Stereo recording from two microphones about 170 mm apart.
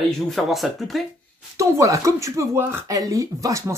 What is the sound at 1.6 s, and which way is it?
Speech, 20° right (ahead or behind).